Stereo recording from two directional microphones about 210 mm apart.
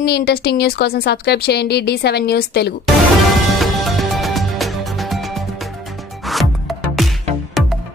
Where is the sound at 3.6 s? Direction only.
Centre (ahead or behind).